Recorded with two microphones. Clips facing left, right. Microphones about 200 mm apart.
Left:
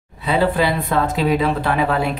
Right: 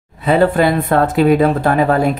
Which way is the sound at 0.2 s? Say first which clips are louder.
Right 5 dB; 50° right (ahead or behind).